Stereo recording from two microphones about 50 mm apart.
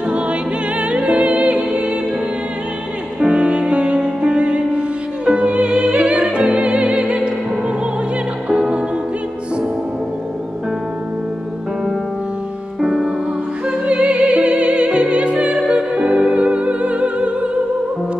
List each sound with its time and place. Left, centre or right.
0.1 s music: right
3.2 s music: centre
8.5 s music: centre
12.8 s music: centre
13.7 s music: right